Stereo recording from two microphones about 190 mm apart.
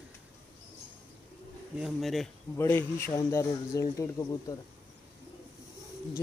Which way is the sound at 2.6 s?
10° left (ahead or behind).